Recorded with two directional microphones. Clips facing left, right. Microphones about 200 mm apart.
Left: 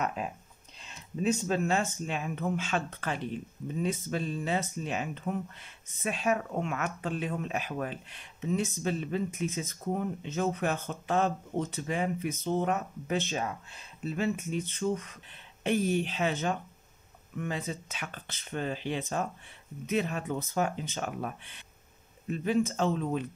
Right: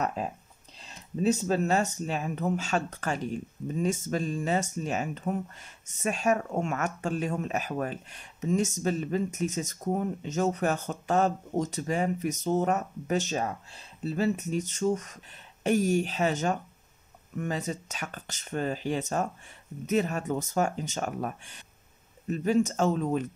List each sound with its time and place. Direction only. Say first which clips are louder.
0.0 s speech: right 2 dB; 35° right (ahead or behind)